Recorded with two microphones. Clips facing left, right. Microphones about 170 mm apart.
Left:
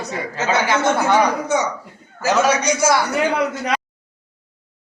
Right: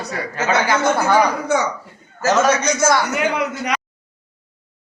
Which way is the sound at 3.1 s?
30° left (ahead or behind).